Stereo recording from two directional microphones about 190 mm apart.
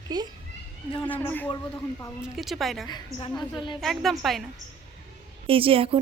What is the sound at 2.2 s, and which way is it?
Speech, centre (ahead or behind).